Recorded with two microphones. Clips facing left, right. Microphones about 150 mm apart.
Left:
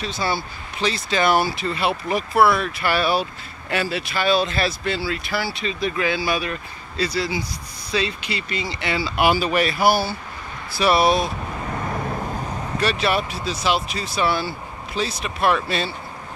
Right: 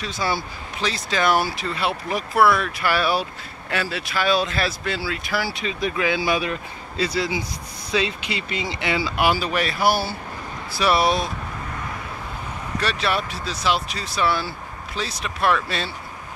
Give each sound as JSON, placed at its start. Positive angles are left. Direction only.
{"t": 0.0, "sound": "speech", "side_deg": -10}
{"t": 9.1, "sound": "speech", "side_deg": 0}
{"t": 11.9, "sound": "vehicle", "side_deg": 45}
{"t": 12.8, "sound": "speech", "side_deg": 5}